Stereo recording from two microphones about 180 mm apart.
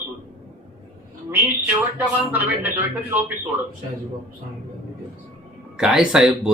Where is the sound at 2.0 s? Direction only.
10° right (ahead or behind).